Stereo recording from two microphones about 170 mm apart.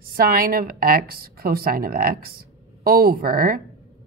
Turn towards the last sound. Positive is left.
turn(degrees=-60)  # may be behind; listen again after turning